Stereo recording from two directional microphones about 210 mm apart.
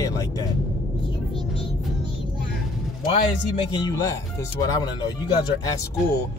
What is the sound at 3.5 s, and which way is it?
Speech, 20° left (ahead or behind).